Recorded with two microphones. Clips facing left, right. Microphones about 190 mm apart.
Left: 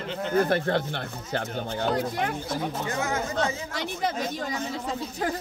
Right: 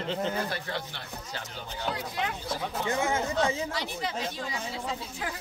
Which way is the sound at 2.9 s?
25° right (ahead or behind).